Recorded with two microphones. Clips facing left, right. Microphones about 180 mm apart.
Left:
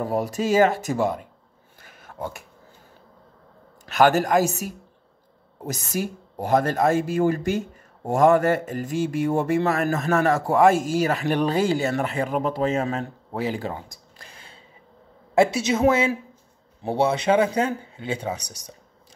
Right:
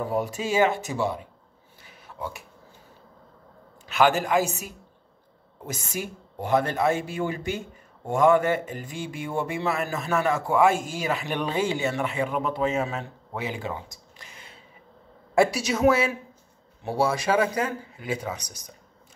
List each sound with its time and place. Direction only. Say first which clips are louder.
0.0 s speech: left 3 dB; 40° left (ahead or behind)
1.8 s a sound: left 3 dB; 50° left (ahead or behind)
3.9 s speech: left 3 dB; 40° left (ahead or behind)
5.7 s speech: left 5 dB; 40° left (ahead or behind)
14.2 s a sound: left 1 dB; 30° left (ahead or behind)
15.3 s speech: left 3 dB; 25° left (ahead or behind)